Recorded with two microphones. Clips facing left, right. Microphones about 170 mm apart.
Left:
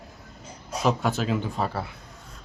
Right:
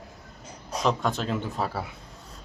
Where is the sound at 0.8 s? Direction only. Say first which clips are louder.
Left 2 dB; 5° left (ahead or behind).